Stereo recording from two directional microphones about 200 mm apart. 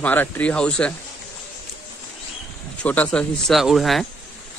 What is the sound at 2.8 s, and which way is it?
Speech, 5° left (ahead or behind).